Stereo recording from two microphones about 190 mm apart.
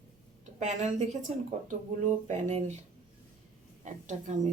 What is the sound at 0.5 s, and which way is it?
Speech, 35° right (ahead or behind).